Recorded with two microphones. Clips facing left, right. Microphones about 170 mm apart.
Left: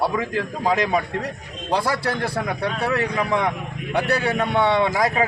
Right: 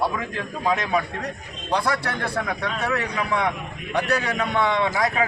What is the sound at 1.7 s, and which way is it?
A man's voice, 30° left (ahead or behind).